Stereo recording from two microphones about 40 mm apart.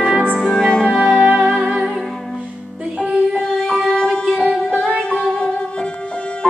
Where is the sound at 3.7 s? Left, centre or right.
Left.